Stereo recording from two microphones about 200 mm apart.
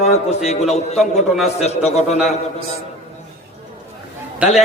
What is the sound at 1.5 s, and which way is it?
Speech, 35° left (ahead or behind).